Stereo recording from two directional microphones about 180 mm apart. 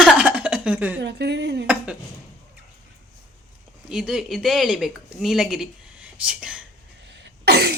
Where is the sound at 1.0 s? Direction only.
70° right (ahead or behind).